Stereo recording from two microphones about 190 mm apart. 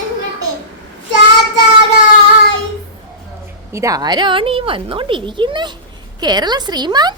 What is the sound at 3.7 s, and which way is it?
A woman's voice, 20° right (ahead or behind).